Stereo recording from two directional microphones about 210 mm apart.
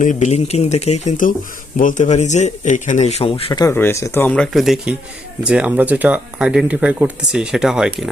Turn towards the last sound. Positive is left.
turn(degrees=-5)  # may be behind; listen again after turning